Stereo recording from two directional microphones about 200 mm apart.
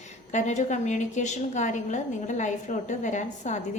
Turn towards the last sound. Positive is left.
turn(degrees=35)  # may be behind; listen again after turning